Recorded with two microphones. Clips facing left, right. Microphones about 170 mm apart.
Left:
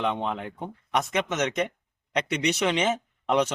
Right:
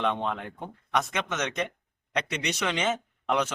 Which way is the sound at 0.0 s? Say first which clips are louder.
Left 1 dB; 10° left (ahead or behind).